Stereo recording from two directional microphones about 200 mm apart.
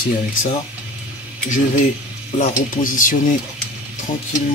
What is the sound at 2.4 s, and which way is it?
Speech, 40° left (ahead or behind).